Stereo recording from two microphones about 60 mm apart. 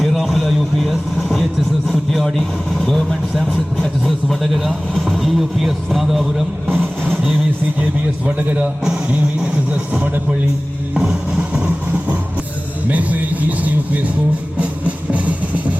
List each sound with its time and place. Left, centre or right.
0.0 s vehicle: centre
1.9 s a sound: centre
2.7 s a man's voice: centre
10.9 s music: centre
12.9 s a sound: right
14.6 s music: right